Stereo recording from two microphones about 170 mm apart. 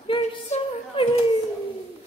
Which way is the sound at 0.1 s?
30° left (ahead or behind).